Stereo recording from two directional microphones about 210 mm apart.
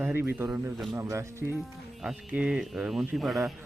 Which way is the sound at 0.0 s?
10° right (ahead or behind).